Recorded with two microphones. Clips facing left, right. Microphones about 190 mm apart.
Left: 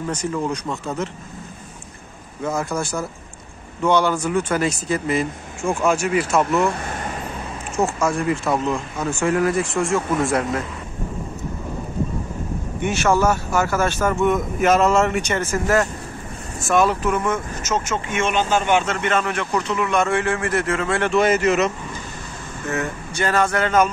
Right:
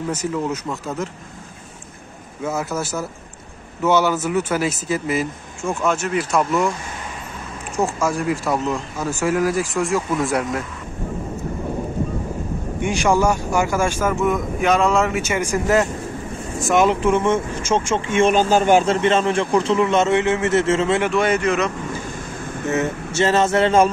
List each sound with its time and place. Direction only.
0.1 s speech: 5° right (ahead or behind)
2.4 s speech: 5° right (ahead or behind)
5.6 s speech: 10° left (ahead or behind)
6.8 s vehicle: 55° left (ahead or behind)
7.7 s speech: centre (ahead or behind)
12.8 s speech: 15° right (ahead or behind)
21.1 s speech: centre (ahead or behind)
22.7 s speech: 20° right (ahead or behind)